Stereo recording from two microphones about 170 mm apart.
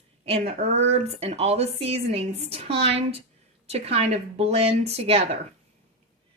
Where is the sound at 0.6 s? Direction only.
40° right (ahead or behind).